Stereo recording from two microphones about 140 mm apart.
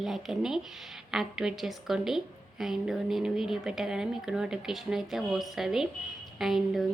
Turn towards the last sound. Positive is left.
turn(degrees=0)  # may be behind; listen again after turning